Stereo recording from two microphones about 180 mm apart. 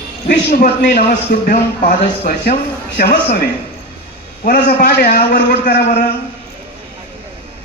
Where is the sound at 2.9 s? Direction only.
60° left (ahead or behind).